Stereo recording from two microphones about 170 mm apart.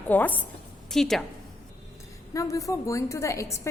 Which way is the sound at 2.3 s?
20° left (ahead or behind).